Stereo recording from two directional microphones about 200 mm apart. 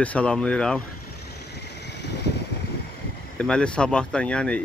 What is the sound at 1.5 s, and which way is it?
Vehicle, 60° left (ahead or behind).